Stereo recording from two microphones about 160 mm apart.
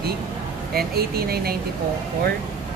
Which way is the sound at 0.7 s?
75° right (ahead or behind).